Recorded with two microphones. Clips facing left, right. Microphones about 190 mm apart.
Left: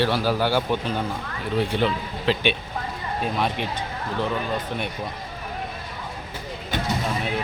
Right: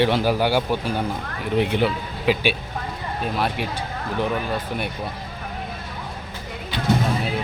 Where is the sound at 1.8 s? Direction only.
5° right (ahead or behind).